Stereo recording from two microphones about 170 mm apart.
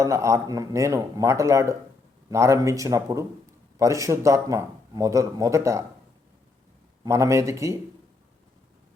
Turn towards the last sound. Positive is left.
turn(degrees=-20)  # may be behind; listen again after turning